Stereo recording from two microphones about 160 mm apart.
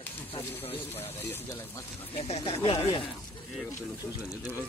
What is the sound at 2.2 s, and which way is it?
Speech, 40° left (ahead or behind).